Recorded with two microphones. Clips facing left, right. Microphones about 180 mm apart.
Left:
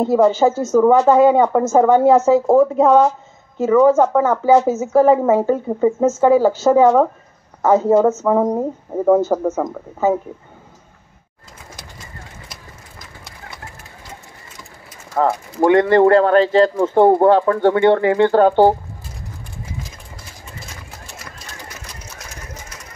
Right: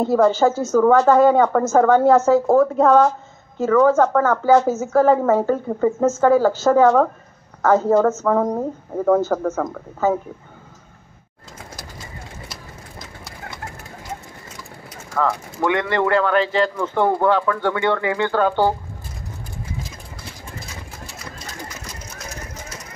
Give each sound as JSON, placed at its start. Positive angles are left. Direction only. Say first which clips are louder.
{"t": 0.1, "sound": "speech", "louder": "left 2 dB", "side_deg": 15}
{"t": 15.1, "sound": "speech", "louder": "left 4 dB", "side_deg": 35}